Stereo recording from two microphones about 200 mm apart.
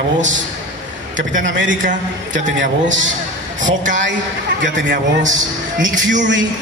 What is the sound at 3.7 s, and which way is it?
Speech, 40° right (ahead or behind).